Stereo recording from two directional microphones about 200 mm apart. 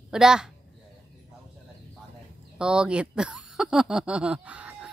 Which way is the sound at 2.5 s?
5° right (ahead or behind).